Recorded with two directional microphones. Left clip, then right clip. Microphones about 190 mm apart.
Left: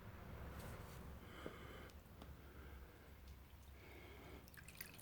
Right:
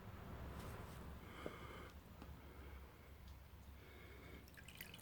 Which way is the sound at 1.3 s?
Centre (ahead or behind).